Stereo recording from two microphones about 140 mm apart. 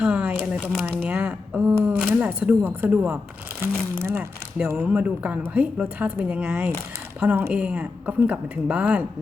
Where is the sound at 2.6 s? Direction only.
10° right (ahead or behind).